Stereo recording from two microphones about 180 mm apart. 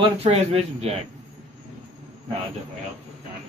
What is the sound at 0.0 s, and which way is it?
Speech, 30° right (ahead or behind).